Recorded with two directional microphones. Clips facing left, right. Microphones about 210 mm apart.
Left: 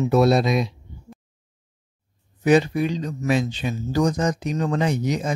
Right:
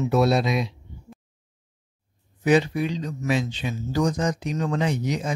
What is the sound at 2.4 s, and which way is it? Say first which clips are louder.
Speech: left 2 dB; 45° left (ahead or behind).